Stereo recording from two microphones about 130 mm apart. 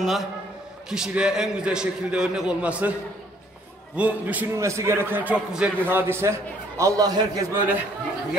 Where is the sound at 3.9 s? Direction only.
10° right (ahead or behind).